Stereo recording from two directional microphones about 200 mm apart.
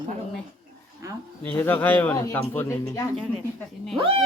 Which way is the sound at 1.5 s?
10° left (ahead or behind).